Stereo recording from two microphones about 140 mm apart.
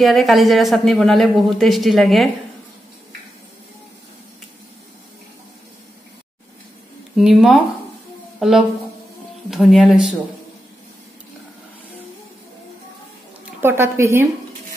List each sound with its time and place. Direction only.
0.0 s speech: centre (ahead or behind)
7.2 s speech: centre (ahead or behind)
13.6 s a woman's voice: 20° right (ahead or behind)